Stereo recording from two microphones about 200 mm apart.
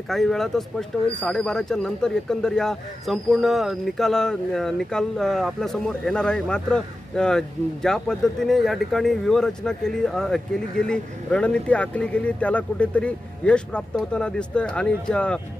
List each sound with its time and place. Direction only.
0.1 s speech: centre (ahead or behind)